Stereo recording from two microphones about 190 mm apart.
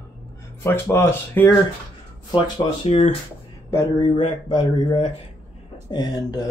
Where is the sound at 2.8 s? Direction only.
40° left (ahead or behind).